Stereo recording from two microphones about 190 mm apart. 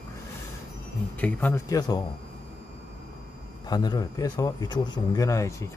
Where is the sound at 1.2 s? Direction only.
10° left (ahead or behind).